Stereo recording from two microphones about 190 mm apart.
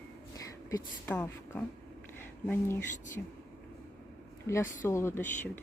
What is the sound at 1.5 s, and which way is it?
Speech, 10° left (ahead or behind).